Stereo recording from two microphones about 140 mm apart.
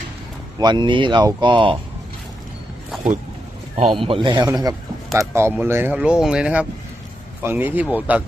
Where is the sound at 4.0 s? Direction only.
40° right (ahead or behind).